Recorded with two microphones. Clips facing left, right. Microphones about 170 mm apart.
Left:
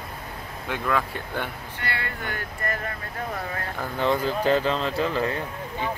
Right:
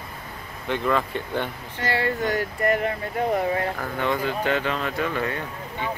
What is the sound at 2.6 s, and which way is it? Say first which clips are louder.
Speech: right 8 dB; 20° right (ahead or behind).